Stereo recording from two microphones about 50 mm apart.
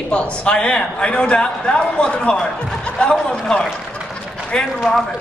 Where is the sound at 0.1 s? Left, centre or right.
Left.